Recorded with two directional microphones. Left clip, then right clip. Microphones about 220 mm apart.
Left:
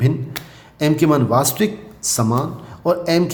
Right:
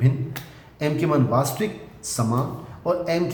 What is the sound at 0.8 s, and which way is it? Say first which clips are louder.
A man's voice: left 6 dB; 50° left (ahead or behind).